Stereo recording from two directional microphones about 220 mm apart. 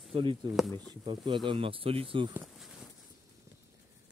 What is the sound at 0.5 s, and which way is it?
Speech, centre (ahead or behind).